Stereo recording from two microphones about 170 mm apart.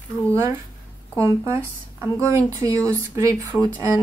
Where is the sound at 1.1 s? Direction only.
20° right (ahead or behind).